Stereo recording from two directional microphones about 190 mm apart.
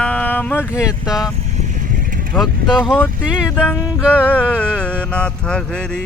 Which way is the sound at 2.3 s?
Centre (ahead or behind).